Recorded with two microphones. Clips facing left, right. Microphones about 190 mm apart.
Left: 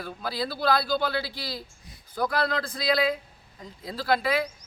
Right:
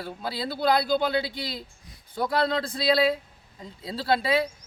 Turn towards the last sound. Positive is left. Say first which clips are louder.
# right 1 dB
turn(degrees=-25)  # may be behind; listen again after turning